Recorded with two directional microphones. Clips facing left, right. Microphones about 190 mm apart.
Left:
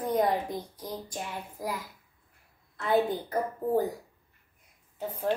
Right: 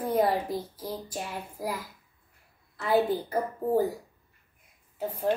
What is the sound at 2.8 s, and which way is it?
A woman's voice, 5° right (ahead or behind).